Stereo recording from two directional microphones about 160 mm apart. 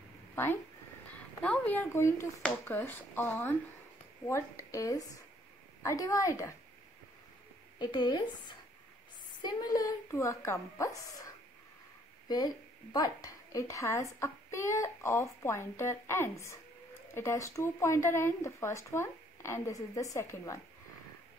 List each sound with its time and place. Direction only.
1.4 s a woman's voice: 10° left (ahead or behind)
7.8 s a woman's voice: 25° left (ahead or behind)
12.3 s a woman's voice: 25° left (ahead or behind)